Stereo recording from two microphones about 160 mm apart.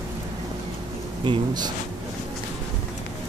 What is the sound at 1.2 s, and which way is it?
Speech, 30° right (ahead or behind).